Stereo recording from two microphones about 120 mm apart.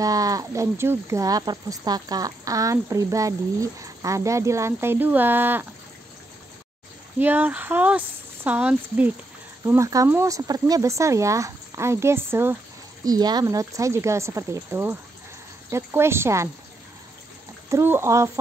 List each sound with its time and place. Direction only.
0.0 s speech: 30° right (ahead or behind)
7.2 s a sound: 15° right (ahead or behind)
9.7 s speech: 25° right (ahead or behind)
13.0 s speech: 35° right (ahead or behind)
17.6 s speech: 20° right (ahead or behind)